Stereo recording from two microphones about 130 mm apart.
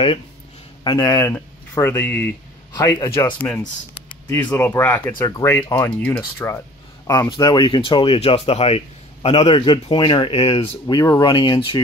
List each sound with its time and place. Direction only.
0.8 s speech: 25° left (ahead or behind)
2.7 s speech: 30° left (ahead or behind)
3.3 s speech: 15° left (ahead or behind)
7.2 s speech: 35° left (ahead or behind)
11.1 s speech: 30° left (ahead or behind)